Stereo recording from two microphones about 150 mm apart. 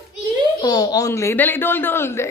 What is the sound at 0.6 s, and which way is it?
A woman's voice, 25° left (ahead or behind).